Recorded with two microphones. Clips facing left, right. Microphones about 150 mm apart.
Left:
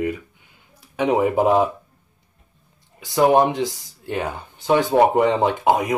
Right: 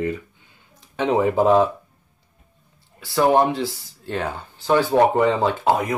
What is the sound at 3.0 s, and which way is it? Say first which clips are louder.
Speech: left 1 dB; 15° left (ahead or behind).